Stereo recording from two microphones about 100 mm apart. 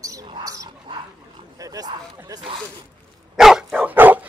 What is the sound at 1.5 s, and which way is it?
Dog, 35° right (ahead or behind).